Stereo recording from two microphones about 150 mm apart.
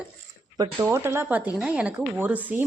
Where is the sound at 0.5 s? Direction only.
25° right (ahead or behind).